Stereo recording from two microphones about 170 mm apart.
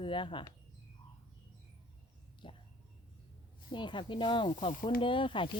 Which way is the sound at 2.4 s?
30° left (ahead or behind).